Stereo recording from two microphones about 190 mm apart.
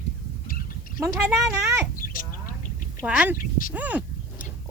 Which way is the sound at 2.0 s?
45° left (ahead or behind).